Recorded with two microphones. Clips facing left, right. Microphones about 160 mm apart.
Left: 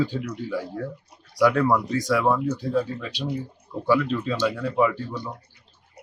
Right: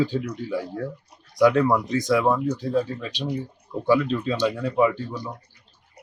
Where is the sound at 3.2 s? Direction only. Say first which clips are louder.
Right 1 dB; 10° right (ahead or behind).